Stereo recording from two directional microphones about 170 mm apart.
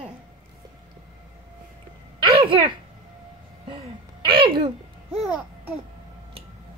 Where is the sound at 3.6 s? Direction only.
30° right (ahead or behind).